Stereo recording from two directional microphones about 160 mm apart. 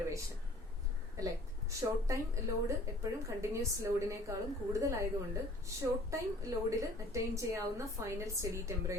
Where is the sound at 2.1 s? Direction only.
20° right (ahead or behind).